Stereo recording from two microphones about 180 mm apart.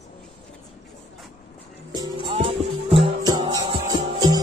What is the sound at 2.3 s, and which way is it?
Music, 35° right (ahead or behind).